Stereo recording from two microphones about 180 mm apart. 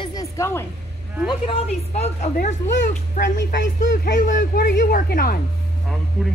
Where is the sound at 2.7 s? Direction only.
75° left (ahead or behind).